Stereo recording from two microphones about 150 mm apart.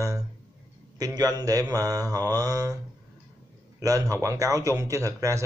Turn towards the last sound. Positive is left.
turn(degrees=-20)  # may be behind; listen again after turning